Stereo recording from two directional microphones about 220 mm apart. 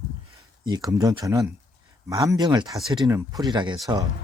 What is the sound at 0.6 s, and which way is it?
Speech, 20° right (ahead or behind).